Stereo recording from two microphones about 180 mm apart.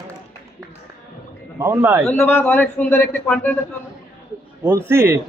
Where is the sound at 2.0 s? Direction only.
10° left (ahead or behind).